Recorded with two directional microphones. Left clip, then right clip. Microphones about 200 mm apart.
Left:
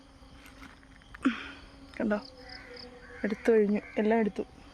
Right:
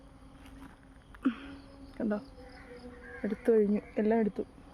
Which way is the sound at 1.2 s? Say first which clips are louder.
Left 3 dB; 5° left (ahead or behind).